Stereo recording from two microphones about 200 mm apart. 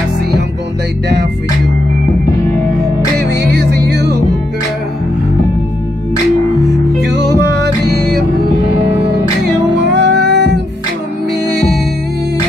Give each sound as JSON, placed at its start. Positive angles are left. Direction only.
{"t": 3.5, "sound": "music", "side_deg": -55}
{"t": 7.1, "sound": "music", "side_deg": -55}
{"t": 9.8, "sound": "music", "side_deg": -60}